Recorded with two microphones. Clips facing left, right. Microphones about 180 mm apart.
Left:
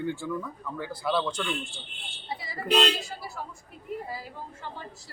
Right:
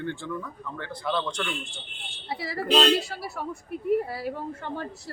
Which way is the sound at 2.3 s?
70° right (ahead or behind).